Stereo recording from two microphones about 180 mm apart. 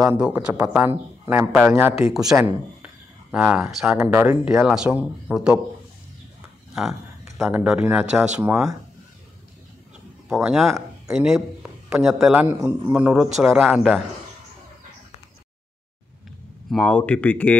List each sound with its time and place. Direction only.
0.2 s a man's voice: 5° right (ahead or behind)
6.7 s speech: centre (ahead or behind)
10.2 s speech: 5° right (ahead or behind)
16.7 s speech: 5° left (ahead or behind)